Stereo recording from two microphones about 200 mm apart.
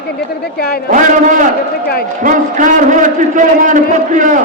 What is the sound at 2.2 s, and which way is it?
A man's voice, 40° right (ahead or behind).